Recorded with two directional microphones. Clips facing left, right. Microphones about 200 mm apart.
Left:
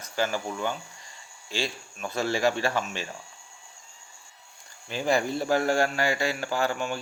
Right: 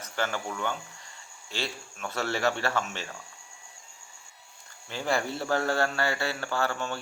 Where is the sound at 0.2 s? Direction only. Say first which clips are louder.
Left 3 dB; 10° left (ahead or behind).